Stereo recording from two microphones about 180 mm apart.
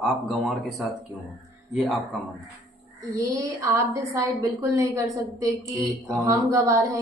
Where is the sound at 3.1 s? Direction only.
20° right (ahead or behind).